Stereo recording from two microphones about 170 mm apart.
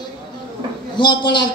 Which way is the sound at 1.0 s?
25° left (ahead or behind).